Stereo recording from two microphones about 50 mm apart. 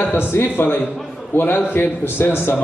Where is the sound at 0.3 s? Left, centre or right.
Left.